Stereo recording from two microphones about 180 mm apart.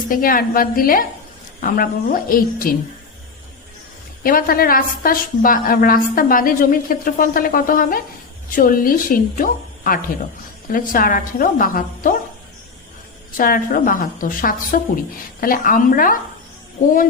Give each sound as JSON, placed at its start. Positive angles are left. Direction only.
{"t": 0.1, "sound": "a woman's voice", "side_deg": 50}
{"t": 4.2, "sound": "a woman's voice", "side_deg": 55}
{"t": 13.3, "sound": "a woman's voice", "side_deg": 50}